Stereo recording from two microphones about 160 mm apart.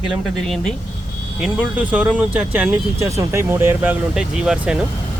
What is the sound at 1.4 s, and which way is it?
Speech, 10° right (ahead or behind).